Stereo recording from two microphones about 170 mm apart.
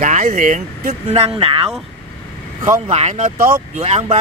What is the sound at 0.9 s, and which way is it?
Speech, 35° right (ahead or behind).